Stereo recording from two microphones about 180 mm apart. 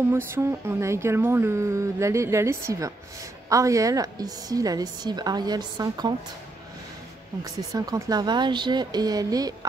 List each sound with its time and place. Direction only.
0.1 s a woman's voice: 15° right (ahead or behind)
7.4 s a woman's voice: 20° right (ahead or behind)